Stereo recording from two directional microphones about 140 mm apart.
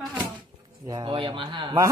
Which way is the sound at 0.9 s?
35° right (ahead or behind).